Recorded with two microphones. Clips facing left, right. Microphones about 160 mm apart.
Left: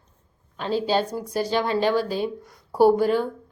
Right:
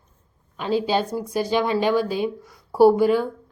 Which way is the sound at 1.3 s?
10° right (ahead or behind).